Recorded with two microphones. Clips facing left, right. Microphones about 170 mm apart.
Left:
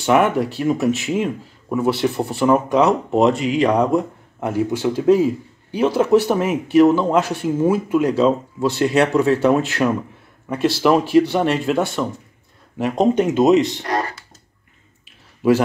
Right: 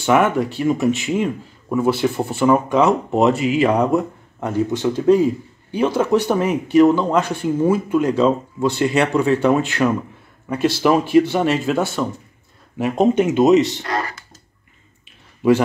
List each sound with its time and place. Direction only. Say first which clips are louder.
0.0 s a man's voice: even; centre (ahead or behind)
4.4 s a man's voice: even; 5° left (ahead or behind)
13.8 s computer keyboard: left 2 dB; 30° left (ahead or behind)
15.4 s a man's voice: right 1 dB; 5° left (ahead or behind)